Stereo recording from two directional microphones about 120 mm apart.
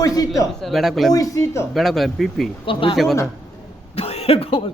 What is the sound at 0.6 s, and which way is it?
Speech, centre (ahead or behind).